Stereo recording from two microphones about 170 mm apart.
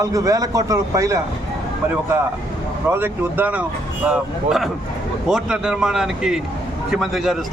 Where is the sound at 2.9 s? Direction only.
10° right (ahead or behind).